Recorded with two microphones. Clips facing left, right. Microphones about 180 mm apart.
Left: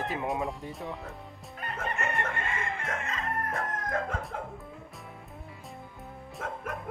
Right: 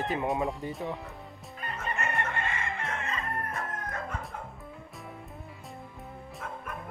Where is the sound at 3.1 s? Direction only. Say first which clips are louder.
Left 2 dB; 90° left.